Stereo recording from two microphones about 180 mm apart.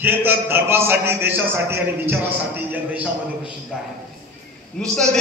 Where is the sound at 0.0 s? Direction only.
10° right (ahead or behind).